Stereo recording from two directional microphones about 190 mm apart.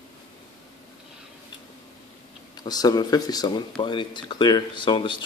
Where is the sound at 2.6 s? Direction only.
20° left (ahead or behind).